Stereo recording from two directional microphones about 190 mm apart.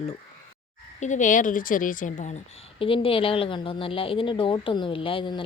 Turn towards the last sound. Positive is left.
turn(degrees=25)  # may be behind; listen again after turning